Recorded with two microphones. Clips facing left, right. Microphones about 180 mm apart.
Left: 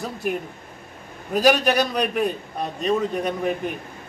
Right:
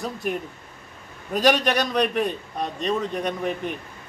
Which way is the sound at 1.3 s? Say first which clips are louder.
Left 2 dB; 5° left (ahead or behind).